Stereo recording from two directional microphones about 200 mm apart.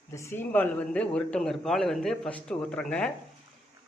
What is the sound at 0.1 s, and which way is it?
Speech, 15° left (ahead or behind).